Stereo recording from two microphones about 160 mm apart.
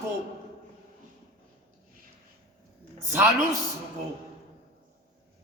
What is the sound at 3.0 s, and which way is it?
Speech, 20° right (ahead or behind).